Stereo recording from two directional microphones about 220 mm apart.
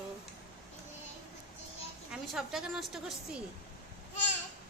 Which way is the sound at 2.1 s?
Centre (ahead or behind).